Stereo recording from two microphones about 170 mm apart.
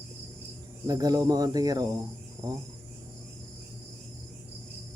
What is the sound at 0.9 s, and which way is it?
Speech, 20° right (ahead or behind).